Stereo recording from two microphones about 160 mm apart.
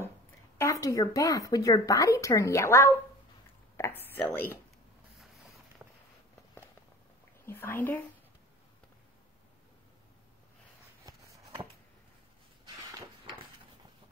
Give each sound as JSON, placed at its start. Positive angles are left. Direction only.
{"t": 0.6, "sound": "speech", "side_deg": 20}
{"t": 3.7, "sound": "a sound", "side_deg": 15}
{"t": 7.4, "sound": "a woman's voice", "side_deg": 15}